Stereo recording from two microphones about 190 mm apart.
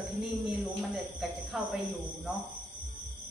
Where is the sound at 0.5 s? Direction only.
5° right (ahead or behind).